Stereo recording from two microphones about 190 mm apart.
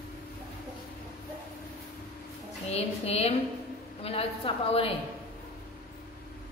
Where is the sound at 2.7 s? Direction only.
30° left (ahead or behind).